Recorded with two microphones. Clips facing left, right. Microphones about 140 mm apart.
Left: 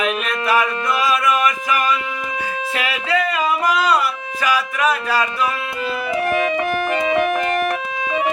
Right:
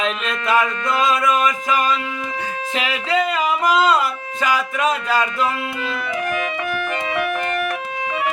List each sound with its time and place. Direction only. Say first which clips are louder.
0.0 s a sound: left 2 dB; 25° right (ahead or behind)
1.0 s speech: right 1 dB; 20° right (ahead or behind)
2.7 s music: right 1 dB; 20° right (ahead or behind)
6.2 s music: left 5 dB; 30° left (ahead or behind)